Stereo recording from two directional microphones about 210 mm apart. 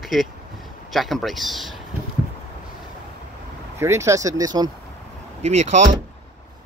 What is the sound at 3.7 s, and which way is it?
Speech, 15° right (ahead or behind).